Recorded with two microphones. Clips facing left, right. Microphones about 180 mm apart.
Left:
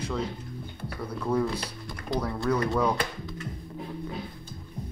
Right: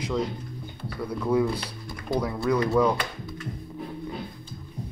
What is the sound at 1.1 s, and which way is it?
Speech, 10° right (ahead or behind).